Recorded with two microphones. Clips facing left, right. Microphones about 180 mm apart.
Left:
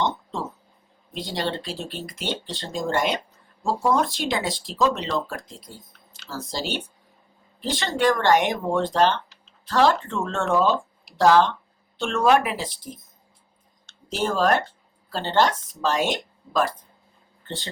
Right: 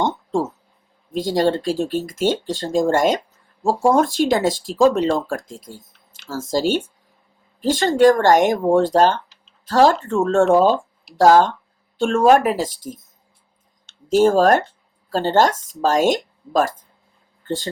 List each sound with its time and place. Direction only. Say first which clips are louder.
0.0 s a sound: right 6 dB; 45° right (ahead or behind)
1.1 s speech: right 10 dB; 45° right (ahead or behind)
14.1 s speech: right 8 dB; 45° right (ahead or behind)